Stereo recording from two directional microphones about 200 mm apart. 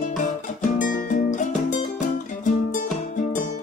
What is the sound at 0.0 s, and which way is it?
Music, 40° left (ahead or behind).